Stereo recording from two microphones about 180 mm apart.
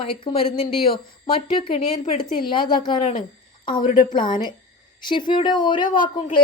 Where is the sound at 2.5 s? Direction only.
25° left (ahead or behind).